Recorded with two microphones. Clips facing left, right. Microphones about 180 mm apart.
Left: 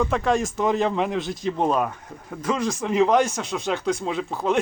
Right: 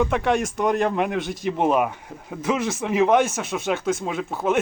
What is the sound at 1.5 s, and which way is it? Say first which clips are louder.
Speech: right 2 dB; 15° right (ahead or behind).